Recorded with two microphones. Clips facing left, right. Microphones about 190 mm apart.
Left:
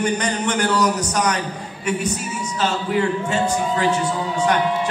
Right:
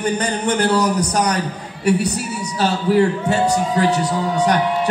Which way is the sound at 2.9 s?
40° right (ahead or behind).